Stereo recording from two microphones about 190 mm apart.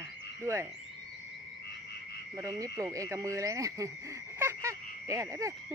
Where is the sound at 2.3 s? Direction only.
15° right (ahead or behind).